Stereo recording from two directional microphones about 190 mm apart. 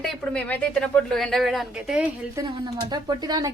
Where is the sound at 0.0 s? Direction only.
5° left (ahead or behind).